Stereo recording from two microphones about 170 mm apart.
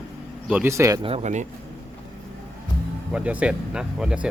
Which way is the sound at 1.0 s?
35° right (ahead or behind).